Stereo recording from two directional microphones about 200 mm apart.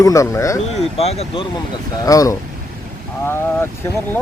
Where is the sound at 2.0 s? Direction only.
15° left (ahead or behind).